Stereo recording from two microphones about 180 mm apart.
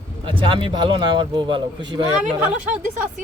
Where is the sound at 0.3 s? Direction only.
25° right (ahead or behind).